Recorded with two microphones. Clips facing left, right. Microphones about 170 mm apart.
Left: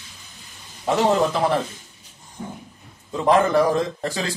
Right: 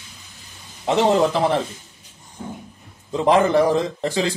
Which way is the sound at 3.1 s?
25° right (ahead or behind).